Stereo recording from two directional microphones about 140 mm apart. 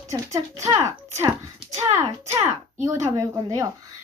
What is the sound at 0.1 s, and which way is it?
Speech, 20° right (ahead or behind).